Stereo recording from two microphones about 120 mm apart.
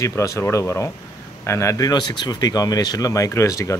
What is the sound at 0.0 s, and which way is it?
Speech, 25° left (ahead or behind).